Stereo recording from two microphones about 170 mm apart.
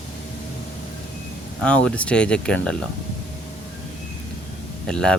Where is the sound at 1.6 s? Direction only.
5° left (ahead or behind).